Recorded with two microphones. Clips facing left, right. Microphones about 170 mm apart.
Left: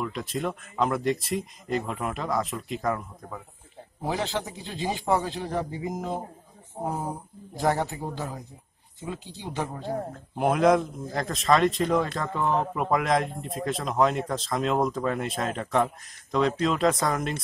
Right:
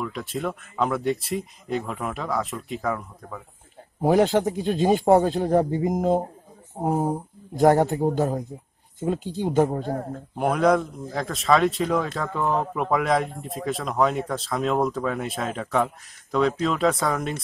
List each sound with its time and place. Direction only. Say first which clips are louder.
0.0 s speech: right 1 dB; centre (ahead or behind)
4.0 s a man's voice: right 10 dB; 50° right (ahead or behind)
10.3 s speech: right 1 dB; centre (ahead or behind)